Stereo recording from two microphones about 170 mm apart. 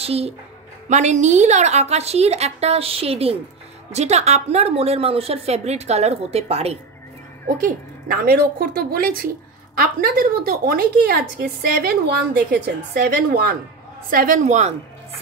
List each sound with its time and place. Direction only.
0.0 s a woman's voice: 35° right (ahead or behind)
7.4 s a woman's voice: 55° right (ahead or behind)